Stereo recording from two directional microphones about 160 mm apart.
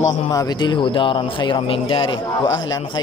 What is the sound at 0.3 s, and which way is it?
A man's voice, 25° left (ahead or behind).